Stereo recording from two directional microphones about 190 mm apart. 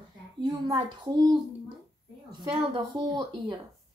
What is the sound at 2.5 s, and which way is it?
Speech, 25° right (ahead or behind).